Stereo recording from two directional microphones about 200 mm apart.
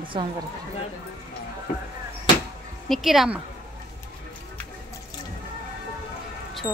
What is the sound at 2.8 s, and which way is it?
Speech, centre (ahead or behind).